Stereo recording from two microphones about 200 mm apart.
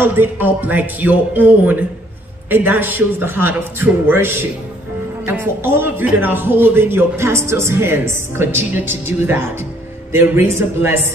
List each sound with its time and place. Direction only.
0.0 s a man's voice: 10° right (ahead or behind)